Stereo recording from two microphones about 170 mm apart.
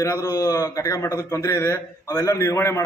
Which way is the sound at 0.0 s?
20° left (ahead or behind).